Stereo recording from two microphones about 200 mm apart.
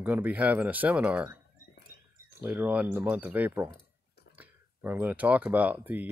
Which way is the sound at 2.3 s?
10° right (ahead or behind).